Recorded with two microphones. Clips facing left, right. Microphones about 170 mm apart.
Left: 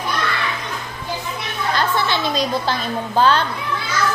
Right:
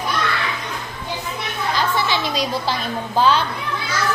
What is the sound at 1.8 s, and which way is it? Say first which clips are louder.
A woman's voice: left 1 dB; 10° right (ahead or behind).